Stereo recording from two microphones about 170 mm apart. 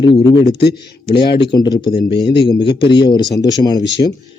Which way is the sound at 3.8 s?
90° left.